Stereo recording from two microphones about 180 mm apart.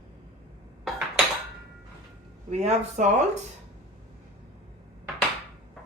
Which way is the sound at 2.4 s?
35° right (ahead or behind).